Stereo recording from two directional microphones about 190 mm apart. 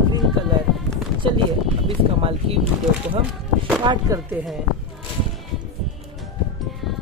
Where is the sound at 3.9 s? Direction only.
25° right (ahead or behind).